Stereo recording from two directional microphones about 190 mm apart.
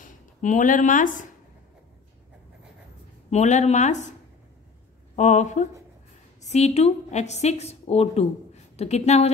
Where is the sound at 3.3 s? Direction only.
35° left (ahead or behind).